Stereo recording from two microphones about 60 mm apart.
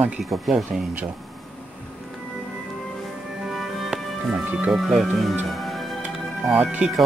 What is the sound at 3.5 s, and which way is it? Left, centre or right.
Music, centre.